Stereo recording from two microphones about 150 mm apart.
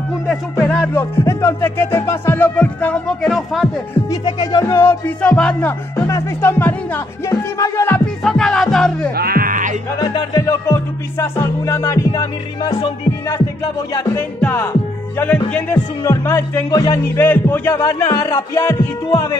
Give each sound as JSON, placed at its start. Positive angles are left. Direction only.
{"t": 0.7, "sound": "speech", "side_deg": 10}
{"t": 4.1, "sound": "music", "side_deg": 30}
{"t": 4.7, "sound": "speech", "side_deg": 10}
{"t": 5.9, "sound": "music", "side_deg": 20}
{"t": 8.2, "sound": "music", "side_deg": 5}
{"t": 9.1, "sound": "music", "side_deg": -90}
{"t": 9.9, "sound": "music", "side_deg": 25}
{"t": 14.0, "sound": "speech", "side_deg": 10}
{"t": 19.0, "sound": "music", "side_deg": 20}